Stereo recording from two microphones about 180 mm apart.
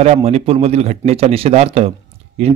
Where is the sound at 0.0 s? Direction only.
35° right (ahead or behind).